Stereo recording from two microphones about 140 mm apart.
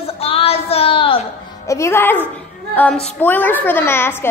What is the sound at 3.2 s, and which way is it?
A child's voice, 10° left (ahead or behind).